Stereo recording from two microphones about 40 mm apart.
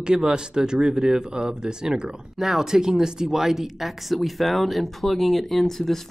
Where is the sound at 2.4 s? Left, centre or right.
Centre.